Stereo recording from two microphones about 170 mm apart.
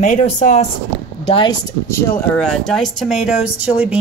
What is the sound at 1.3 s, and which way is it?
Speech, 30° left (ahead or behind).